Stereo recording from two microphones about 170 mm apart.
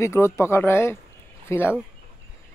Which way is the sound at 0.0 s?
15° left (ahead or behind).